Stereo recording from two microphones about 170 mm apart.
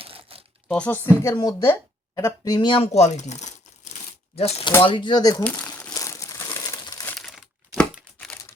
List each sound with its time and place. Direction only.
0.0 s crumpling: 35° right (ahead or behind)
0.7 s speech: 10° left (ahead or behind); by 5.4 s 25° left (ahead or behind)
5.6 s crumpling: 10° left (ahead or behind)
5.9 s crumpling: 20° left (ahead or behind)
7.9 s a sound: 5° left (ahead or behind)